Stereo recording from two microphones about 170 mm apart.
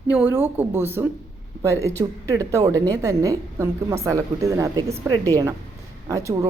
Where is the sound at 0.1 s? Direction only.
10° right (ahead or behind).